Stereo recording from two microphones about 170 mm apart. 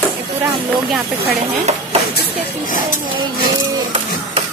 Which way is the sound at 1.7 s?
40° right (ahead or behind).